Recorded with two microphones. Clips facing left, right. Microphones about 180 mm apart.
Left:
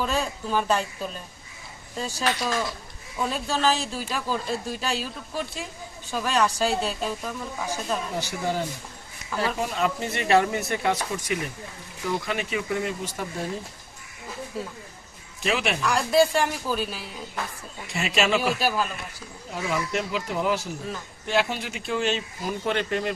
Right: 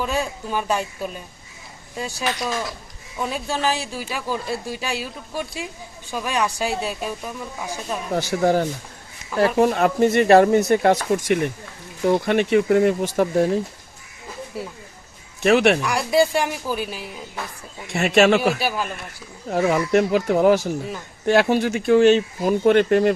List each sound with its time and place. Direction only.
0.0 s speech: 10° right (ahead or behind)
8.1 s speech: 65° right (ahead or behind); by 10.9 s 45° right (ahead or behind)
11.1 s speech: 70° right (ahead or behind)
12.0 s speech: 55° right (ahead or behind)
14.5 s speech: 10° right (ahead or behind)
15.4 s speech: 70° right (ahead or behind)
15.8 s speech: 10° right (ahead or behind)
17.9 s speech: 60° right (ahead or behind)
18.4 s speech: 10° right (ahead or behind)
19.5 s speech: 60° right (ahead or behind)